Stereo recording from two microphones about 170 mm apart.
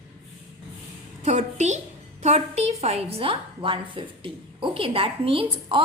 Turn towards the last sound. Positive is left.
turn(degrees=-30)  # may be behind; listen again after turning